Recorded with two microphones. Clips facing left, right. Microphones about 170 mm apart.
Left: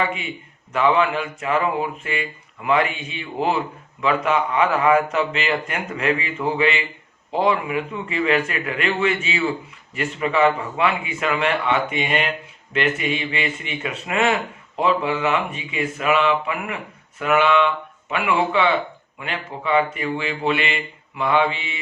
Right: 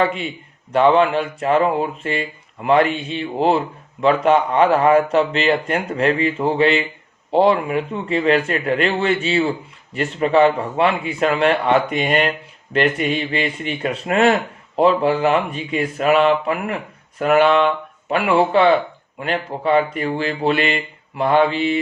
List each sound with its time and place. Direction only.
0.7 s speech: 35° right (ahead or behind)